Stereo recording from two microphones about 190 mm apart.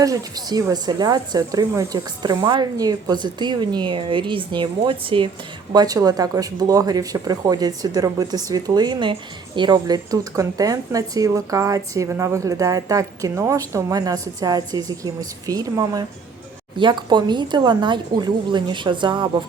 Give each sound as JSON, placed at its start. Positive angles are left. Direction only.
{"t": 0.0, "sound": "speech", "side_deg": -20}